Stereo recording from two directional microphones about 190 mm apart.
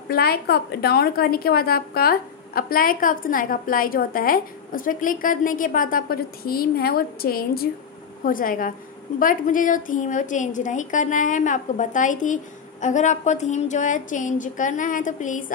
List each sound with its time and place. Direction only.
0.1 s a woman's voice: 55° left (ahead or behind)